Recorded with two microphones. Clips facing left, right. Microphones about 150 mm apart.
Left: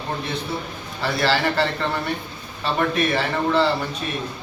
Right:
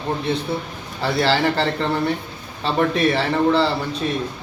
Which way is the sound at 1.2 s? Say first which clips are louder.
Right 2 dB; 30° right (ahead or behind).